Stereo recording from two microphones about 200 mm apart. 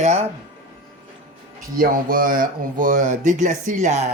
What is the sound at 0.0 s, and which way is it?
Speech, 30° right (ahead or behind).